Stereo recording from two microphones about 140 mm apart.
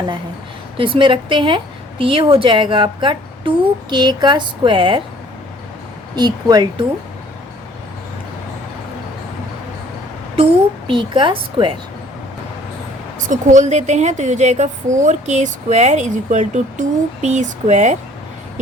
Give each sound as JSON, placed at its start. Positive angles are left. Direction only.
{"t": 0.8, "sound": "a woman's voice", "side_deg": -35}
{"t": 6.1, "sound": "speech", "side_deg": -30}
{"t": 10.3, "sound": "a woman's voice", "side_deg": -40}
{"t": 13.2, "sound": "a woman's voice", "side_deg": -65}